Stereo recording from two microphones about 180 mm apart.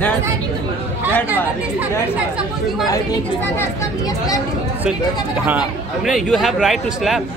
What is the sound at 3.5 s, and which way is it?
Speech, 15° left (ahead or behind).